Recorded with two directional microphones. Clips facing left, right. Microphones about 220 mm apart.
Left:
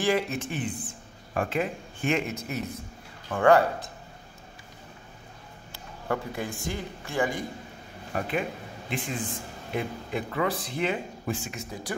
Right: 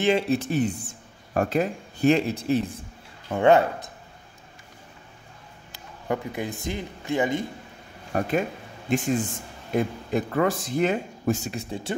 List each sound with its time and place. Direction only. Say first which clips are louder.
0.0 s speech: right 4 dB; 25° right (ahead or behind)
0.4 s speech: right 7 dB; 40° right (ahead or behind); by 3.9 s 20° right (ahead or behind)
6.0 s speech: right 2 dB; 20° right (ahead or behind)
8.1 s speech: right 5 dB; 45° right (ahead or behind)